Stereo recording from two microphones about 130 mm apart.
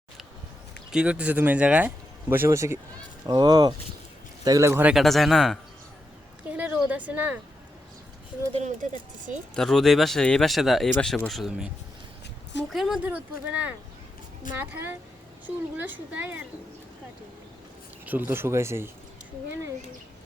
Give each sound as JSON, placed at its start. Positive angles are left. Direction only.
{"t": 0.9, "sound": "speech", "side_deg": -5}
{"t": 3.2, "sound": "speech", "side_deg": -35}
{"t": 4.9, "sound": "speech", "side_deg": 0}
{"t": 6.5, "sound": "a sound", "side_deg": -10}
{"t": 6.7, "sound": "speech", "side_deg": -10}
{"t": 8.5, "sound": "speech", "side_deg": -65}
{"t": 9.6, "sound": "speech", "side_deg": 0}
{"t": 12.7, "sound": "speech", "side_deg": -5}
{"t": 18.0, "sound": "speech", "side_deg": -15}